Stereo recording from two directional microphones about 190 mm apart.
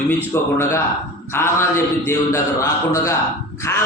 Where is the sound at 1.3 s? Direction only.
15° left (ahead or behind).